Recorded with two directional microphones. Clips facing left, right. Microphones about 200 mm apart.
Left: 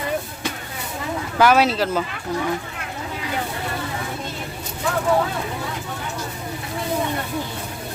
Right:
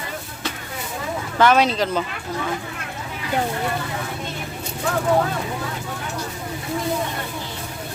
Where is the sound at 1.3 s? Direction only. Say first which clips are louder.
Even; 5° left (ahead or behind).